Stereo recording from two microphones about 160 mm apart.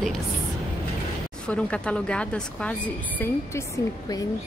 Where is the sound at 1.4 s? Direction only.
5° left (ahead or behind).